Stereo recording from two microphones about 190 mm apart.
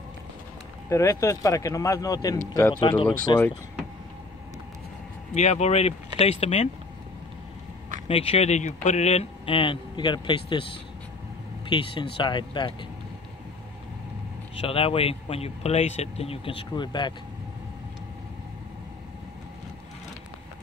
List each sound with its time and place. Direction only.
0.8 s speech: 15° left (ahead or behind)
3.3 s speech: 5° left (ahead or behind)
5.3 s a man's voice: 35° left (ahead or behind)
8.1 s a man's voice: 30° left (ahead or behind)
11.7 s speech: 25° left (ahead or behind)
14.6 s a man's voice: 30° left (ahead or behind)